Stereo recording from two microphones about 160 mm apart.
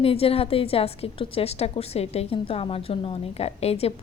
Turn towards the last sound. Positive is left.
turn(degrees=40)  # may be behind; listen again after turning